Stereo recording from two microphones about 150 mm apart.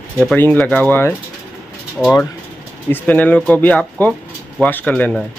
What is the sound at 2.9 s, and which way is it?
Speech, 10° left (ahead or behind).